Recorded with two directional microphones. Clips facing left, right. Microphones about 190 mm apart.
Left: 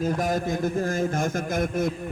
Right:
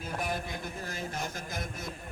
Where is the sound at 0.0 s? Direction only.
45° left (ahead or behind).